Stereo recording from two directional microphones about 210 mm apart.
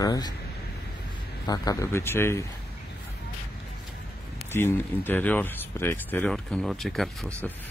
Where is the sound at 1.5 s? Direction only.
15° left (ahead or behind).